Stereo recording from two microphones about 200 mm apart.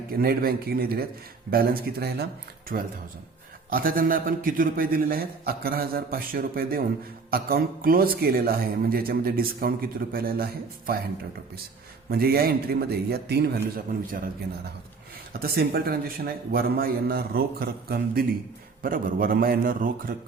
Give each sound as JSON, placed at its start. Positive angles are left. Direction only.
{"t": 0.1, "sound": "a man's voice", "side_deg": -50}
{"t": 12.0, "sound": "a man's voice", "side_deg": -50}
{"t": 15.4, "sound": "a man's voice", "side_deg": -50}